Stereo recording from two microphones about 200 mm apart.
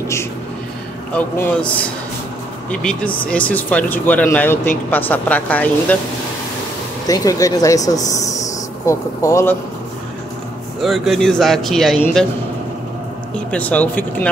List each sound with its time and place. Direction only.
1.1 s speech: 10° left (ahead or behind)
7.1 s speech: 15° left (ahead or behind)
10.8 s a man's voice: centre (ahead or behind)
13.5 s speech: 5° left (ahead or behind)